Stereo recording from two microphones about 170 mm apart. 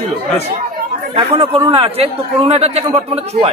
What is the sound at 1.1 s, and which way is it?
A man's voice, 30° right (ahead or behind).